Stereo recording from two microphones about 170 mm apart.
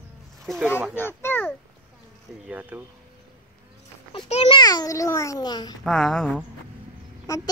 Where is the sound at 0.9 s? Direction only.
15° left (ahead or behind).